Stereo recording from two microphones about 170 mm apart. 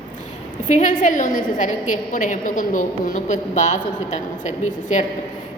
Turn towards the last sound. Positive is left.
turn(degrees=45)  # may be behind; listen again after turning